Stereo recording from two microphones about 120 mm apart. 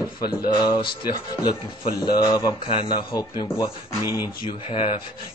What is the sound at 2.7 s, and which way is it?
Speech, 45° left (ahead or behind).